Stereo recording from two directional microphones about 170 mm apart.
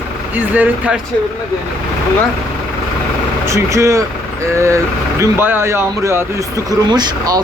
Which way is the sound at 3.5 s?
15° right (ahead or behind).